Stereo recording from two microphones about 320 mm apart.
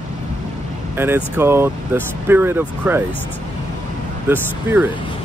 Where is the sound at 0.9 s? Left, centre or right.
Centre.